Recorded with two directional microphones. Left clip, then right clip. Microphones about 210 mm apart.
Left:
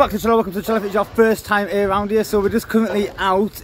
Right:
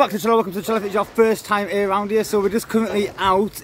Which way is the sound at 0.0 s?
5° right (ahead or behind).